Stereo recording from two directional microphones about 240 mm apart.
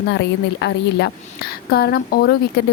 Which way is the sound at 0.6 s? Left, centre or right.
Left.